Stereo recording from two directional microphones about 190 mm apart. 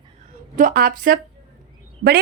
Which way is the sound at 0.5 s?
50° right (ahead or behind).